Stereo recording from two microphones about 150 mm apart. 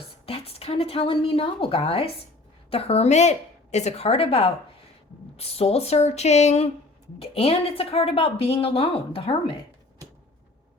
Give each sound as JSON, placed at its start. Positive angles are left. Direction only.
{"t": 0.3, "sound": "a woman's voice", "side_deg": 40}